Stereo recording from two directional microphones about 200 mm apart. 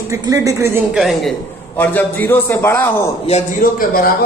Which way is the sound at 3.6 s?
45° left (ahead or behind).